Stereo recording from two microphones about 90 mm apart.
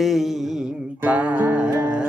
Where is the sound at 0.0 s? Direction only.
5° right (ahead or behind).